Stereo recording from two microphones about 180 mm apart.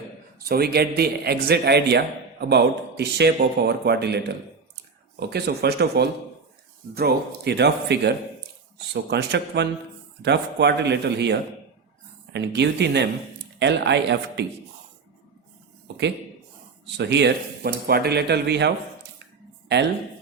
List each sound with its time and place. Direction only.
0.4 s a man's voice: 60° right (ahead or behind)
5.3 s speech: 65° right (ahead or behind)
17.0 s a man's voice: 75° right (ahead or behind)